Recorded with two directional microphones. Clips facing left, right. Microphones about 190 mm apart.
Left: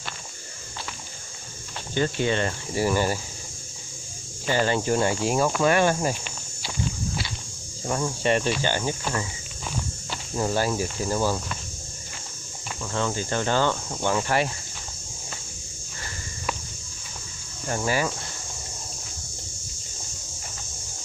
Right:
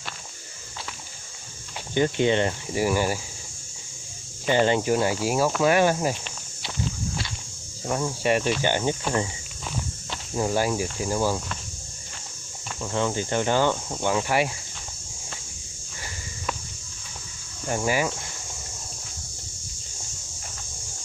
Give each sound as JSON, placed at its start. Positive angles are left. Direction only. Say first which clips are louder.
{"t": 2.0, "sound": "cricket", "louder": "right 3 dB", "side_deg": -20}
{"t": 4.5, "sound": "cricket", "louder": "right 2 dB", "side_deg": -20}
{"t": 4.9, "sound": "cricket", "louder": "even", "side_deg": -5}
{"t": 7.8, "sound": "cricket", "louder": "even", "side_deg": -5}
{"t": 10.3, "sound": "cricket", "louder": "right 1 dB", "side_deg": -10}
{"t": 12.9, "sound": "cricket", "louder": "right 2 dB", "side_deg": -20}
{"t": 17.6, "sound": "cricket", "louder": "right 1 dB", "side_deg": -15}